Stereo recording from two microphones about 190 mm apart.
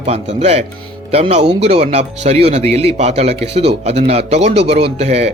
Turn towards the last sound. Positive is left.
turn(degrees=-35)  # may be behind; listen again after turning